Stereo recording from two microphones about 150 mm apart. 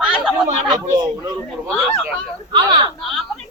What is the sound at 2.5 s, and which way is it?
Speech, 30° right (ahead or behind).